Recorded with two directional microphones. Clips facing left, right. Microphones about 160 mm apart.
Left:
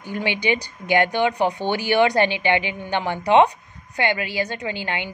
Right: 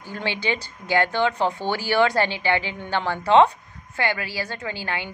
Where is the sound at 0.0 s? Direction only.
15° left (ahead or behind).